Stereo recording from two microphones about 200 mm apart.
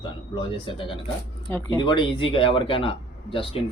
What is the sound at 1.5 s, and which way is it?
Speech, 10° left (ahead or behind).